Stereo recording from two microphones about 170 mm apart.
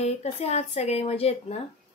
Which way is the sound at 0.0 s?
40° left (ahead or behind).